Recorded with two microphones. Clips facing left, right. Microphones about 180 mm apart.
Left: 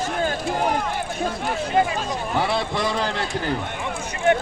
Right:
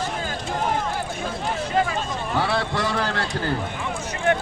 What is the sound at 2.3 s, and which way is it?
A man's voice, 15° left (ahead or behind).